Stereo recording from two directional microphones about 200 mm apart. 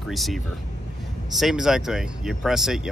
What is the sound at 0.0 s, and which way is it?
Speech, centre (ahead or behind).